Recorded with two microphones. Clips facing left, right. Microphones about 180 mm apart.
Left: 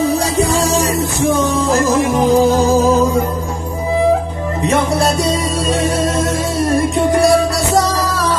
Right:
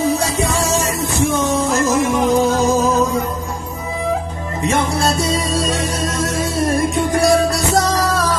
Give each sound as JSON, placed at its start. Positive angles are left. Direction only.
{"t": 1.7, "sound": "music", "side_deg": 35}